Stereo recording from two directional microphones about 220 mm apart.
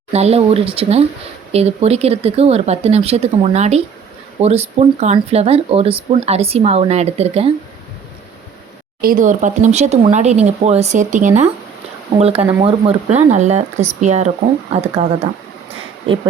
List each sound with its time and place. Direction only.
0.1 s speech: 30° right (ahead or behind)
9.0 s speech: 40° right (ahead or behind)